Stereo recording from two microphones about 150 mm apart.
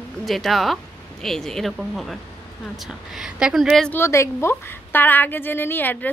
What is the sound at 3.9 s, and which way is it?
A woman's voice, 20° left (ahead or behind).